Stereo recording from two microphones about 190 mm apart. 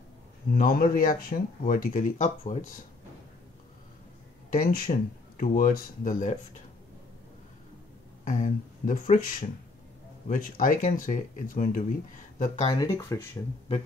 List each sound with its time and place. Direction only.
0.6 s speech: 50° left (ahead or behind)
4.5 s speech: 45° left (ahead or behind)
8.3 s speech: 40° left (ahead or behind)
12.7 s speech: 15° left (ahead or behind)